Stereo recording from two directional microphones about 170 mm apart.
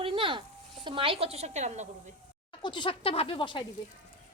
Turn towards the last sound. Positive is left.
turn(degrees=30)  # may be behind; listen again after turning